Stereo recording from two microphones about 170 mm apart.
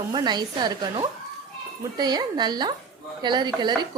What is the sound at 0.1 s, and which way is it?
A woman's voice, 25° right (ahead or behind).